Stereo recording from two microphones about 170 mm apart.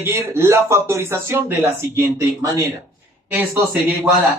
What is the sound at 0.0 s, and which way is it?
Speech, 15° right (ahead or behind).